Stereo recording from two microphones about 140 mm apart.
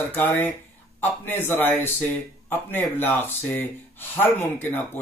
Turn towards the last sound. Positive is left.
turn(degrees=15)  # may be behind; listen again after turning